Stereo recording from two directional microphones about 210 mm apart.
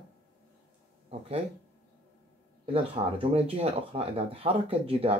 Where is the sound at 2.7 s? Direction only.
25° right (ahead or behind).